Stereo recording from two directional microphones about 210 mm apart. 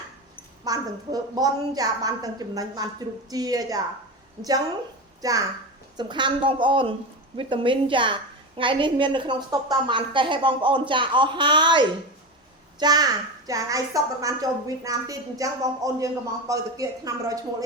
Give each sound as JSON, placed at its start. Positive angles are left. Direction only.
{"t": 0.6, "sound": "a woman's voice", "side_deg": -15}
{"t": 5.2, "sound": "a woman's voice", "side_deg": -15}